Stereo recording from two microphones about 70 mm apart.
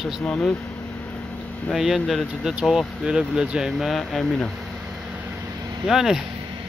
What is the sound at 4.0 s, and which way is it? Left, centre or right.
Speech, centre.